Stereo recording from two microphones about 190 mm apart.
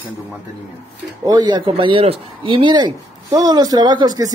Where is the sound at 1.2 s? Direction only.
20° right (ahead or behind).